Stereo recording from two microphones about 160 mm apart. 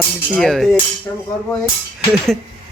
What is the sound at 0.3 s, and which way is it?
Speech, centre (ahead or behind).